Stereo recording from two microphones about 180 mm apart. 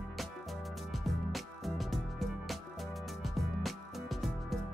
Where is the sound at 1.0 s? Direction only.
Centre (ahead or behind).